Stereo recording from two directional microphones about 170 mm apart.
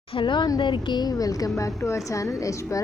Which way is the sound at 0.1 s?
30° left (ahead or behind).